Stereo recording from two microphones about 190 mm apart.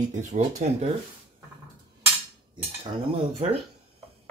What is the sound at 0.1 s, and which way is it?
Speech, 40° right (ahead or behind).